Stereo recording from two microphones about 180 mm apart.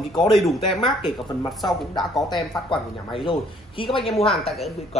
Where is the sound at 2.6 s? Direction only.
30° left (ahead or behind).